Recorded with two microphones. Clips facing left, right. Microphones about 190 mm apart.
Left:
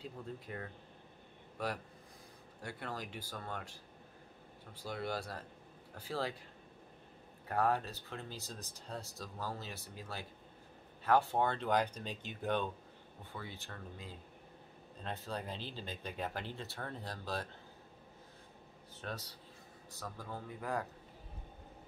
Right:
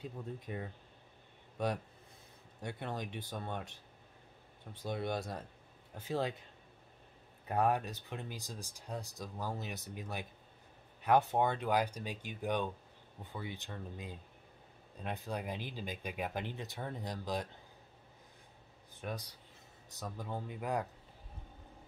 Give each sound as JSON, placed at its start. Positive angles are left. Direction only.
{"t": 0.0, "sound": "speech", "side_deg": -20}
{"t": 7.4, "sound": "speech", "side_deg": -20}
{"t": 18.9, "sound": "speech", "side_deg": -15}